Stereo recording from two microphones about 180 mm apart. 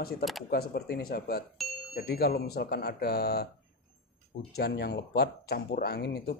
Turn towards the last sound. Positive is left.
turn(degrees=65)  # may be behind; listen again after turning